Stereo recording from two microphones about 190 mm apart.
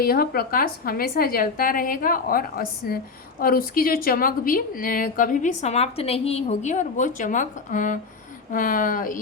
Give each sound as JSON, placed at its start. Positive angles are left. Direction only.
{"t": 0.0, "sound": "a woman's voice", "side_deg": 55}